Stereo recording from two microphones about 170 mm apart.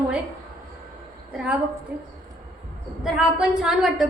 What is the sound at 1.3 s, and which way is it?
Speech, 5° right (ahead or behind).